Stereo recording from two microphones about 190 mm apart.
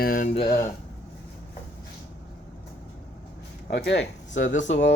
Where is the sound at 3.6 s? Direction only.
60° left (ahead or behind).